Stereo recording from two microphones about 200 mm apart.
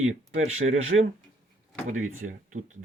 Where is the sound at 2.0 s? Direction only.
40° right (ahead or behind).